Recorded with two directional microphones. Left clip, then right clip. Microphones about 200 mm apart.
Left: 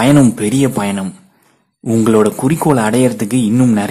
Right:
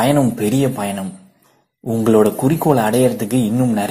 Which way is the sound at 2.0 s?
15° left (ahead or behind).